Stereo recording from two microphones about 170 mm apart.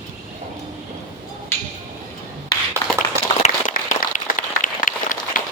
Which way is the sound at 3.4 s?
45° left (ahead or behind).